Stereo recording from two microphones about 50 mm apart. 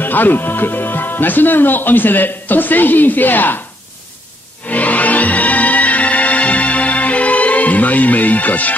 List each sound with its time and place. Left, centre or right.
0.0 s speech: left
4.6 s music: left